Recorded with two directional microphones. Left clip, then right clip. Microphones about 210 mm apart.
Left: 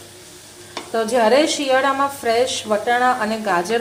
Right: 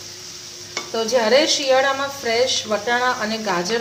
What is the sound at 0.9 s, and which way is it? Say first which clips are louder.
A woman's voice: left 1 dB; 20° left (ahead or behind).